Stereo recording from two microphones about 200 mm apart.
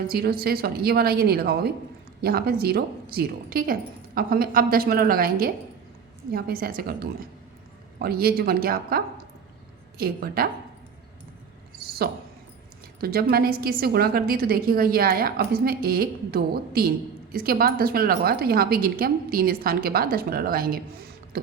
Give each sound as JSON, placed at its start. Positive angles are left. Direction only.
{"t": 0.1, "sound": "a woman's voice", "side_deg": -50}
{"t": 11.8, "sound": "a sound", "side_deg": -50}
{"t": 13.0, "sound": "a woman's voice", "side_deg": -50}
{"t": 21.3, "sound": "beatboxing", "side_deg": -50}